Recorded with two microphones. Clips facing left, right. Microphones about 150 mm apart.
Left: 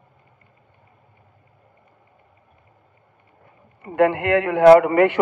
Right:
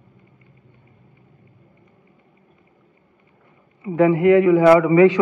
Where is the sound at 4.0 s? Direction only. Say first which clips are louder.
Right 4 dB; 75° left (ahead or behind).